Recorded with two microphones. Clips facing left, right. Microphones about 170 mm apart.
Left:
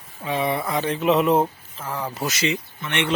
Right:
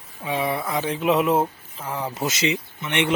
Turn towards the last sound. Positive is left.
turn(degrees=-20)  # may be behind; listen again after turning